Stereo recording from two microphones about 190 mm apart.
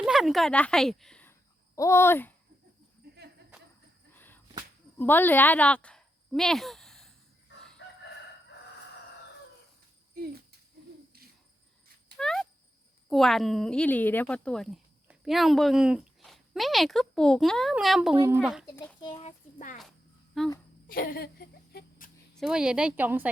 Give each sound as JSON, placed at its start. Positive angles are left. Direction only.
{"t": 0.0, "sound": "speech", "side_deg": 0}
{"t": 4.1, "sound": "a sound", "side_deg": 10}
{"t": 4.9, "sound": "speech", "side_deg": 10}
{"t": 12.1, "sound": "a sound", "side_deg": 0}
{"t": 13.1, "sound": "a woman's voice", "side_deg": 0}
{"t": 18.9, "sound": "speech", "side_deg": 25}
{"t": 19.5, "sound": "speech", "side_deg": 45}
{"t": 20.4, "sound": "speech", "side_deg": 0}
{"t": 20.8, "sound": "a sound", "side_deg": 50}
{"t": 22.4, "sound": "a woman's voice", "side_deg": -5}